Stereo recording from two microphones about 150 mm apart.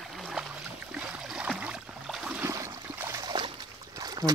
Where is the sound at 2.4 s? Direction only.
20° right (ahead or behind).